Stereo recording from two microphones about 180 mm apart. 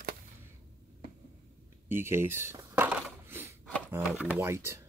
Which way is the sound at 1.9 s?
15° right (ahead or behind).